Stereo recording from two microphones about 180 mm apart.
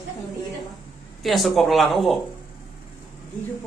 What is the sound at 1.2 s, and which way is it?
Speech, centre (ahead or behind).